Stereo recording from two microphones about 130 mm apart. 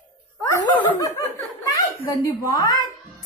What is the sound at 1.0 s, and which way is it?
Speech, 25° left (ahead or behind).